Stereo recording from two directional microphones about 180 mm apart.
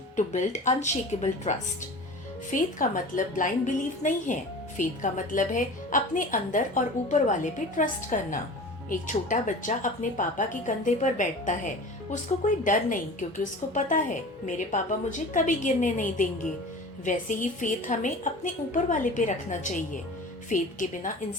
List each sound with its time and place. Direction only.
0.2 s a woman's voice: 40° left (ahead or behind)